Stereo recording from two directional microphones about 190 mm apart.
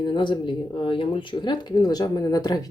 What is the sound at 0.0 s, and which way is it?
Speech, 25° left (ahead or behind).